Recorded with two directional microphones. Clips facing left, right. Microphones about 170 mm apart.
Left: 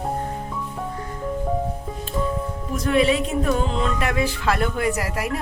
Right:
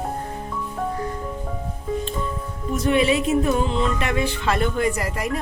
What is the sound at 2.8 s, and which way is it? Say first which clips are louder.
A woman's voice: even; centre (ahead or behind).